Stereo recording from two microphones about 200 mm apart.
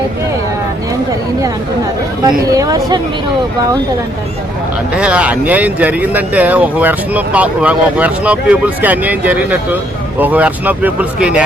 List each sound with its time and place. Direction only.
2.2 s speech: 20° right (ahead or behind)
4.9 s speech: 5° right (ahead or behind)